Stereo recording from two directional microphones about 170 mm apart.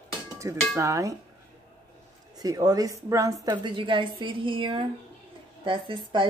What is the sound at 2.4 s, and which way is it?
Speech, 20° right (ahead or behind).